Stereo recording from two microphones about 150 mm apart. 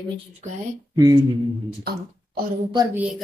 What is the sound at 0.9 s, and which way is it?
Speech, 25° right (ahead or behind).